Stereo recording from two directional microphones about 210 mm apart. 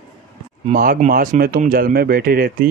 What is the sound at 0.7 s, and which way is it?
Speech, 40° right (ahead or behind).